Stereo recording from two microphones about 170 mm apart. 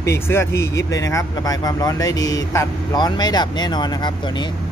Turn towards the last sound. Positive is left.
turn(degrees=25)  # may be behind; listen again after turning